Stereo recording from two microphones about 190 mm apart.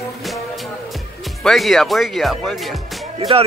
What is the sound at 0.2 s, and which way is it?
Music, centre (ahead or behind).